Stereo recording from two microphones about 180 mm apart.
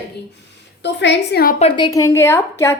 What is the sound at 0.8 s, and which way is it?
Speech, 75° left (ahead or behind).